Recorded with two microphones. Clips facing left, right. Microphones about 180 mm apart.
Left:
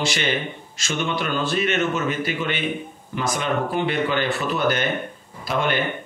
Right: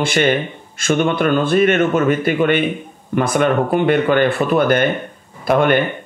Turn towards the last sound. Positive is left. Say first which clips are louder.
# right 9 dB
turn(degrees=-55)  # may be behind; listen again after turning